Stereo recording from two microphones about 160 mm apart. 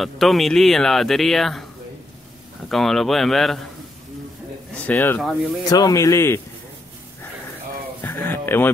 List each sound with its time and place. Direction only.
0.0 s speech: centre (ahead or behind)
2.7 s speech: centre (ahead or behind)
4.8 s speech: 15° left (ahead or behind)
5.7 s speech: 25° left (ahead or behind)
8.0 s a sound: 15° left (ahead or behind)